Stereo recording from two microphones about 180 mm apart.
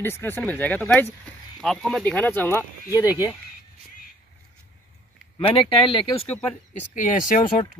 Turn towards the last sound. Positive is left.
turn(degrees=45)  # may be behind; listen again after turning